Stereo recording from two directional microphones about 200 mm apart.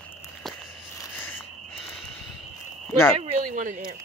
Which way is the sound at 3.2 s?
40° right (ahead or behind).